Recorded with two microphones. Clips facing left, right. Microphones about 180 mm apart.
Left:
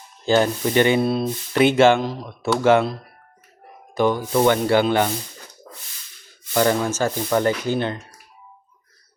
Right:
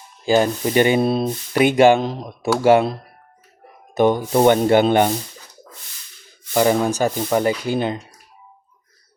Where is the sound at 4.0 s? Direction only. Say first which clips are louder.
Right 3 dB; 20° right (ahead or behind).